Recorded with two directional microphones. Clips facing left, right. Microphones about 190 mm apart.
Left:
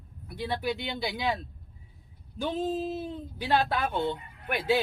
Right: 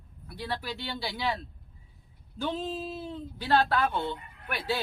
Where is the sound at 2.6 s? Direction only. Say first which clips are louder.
Left 5 dB; 45° left (ahead or behind).